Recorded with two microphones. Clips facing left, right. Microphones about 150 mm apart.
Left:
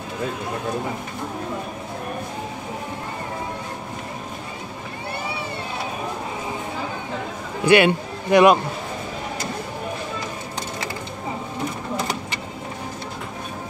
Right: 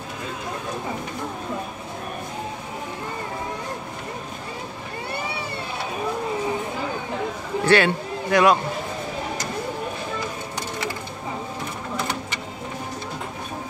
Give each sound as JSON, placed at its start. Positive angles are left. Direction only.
{"t": 7.6, "sound": "speech", "side_deg": 15}